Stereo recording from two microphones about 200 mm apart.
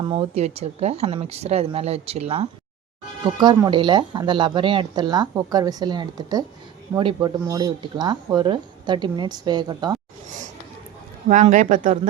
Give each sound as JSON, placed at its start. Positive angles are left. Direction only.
{"t": 0.0, "sound": "speech", "side_deg": -25}
{"t": 3.4, "sound": "speech", "side_deg": -20}
{"t": 11.3, "sound": "speech", "side_deg": -40}